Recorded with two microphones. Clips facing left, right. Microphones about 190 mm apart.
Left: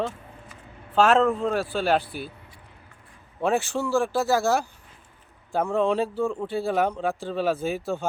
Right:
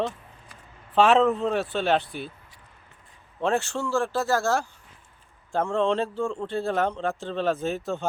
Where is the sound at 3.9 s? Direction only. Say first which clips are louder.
Left 2 dB; 15° left (ahead or behind).